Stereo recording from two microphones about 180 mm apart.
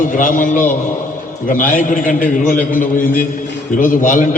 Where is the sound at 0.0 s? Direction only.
45° left (ahead or behind).